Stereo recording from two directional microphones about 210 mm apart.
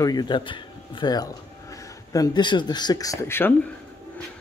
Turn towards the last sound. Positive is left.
turn(degrees=10)  # may be behind; listen again after turning